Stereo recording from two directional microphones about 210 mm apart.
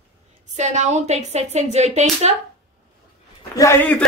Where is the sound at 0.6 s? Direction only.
35° right (ahead or behind).